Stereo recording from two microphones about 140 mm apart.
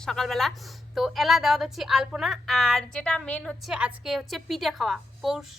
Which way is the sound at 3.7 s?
5° right (ahead or behind).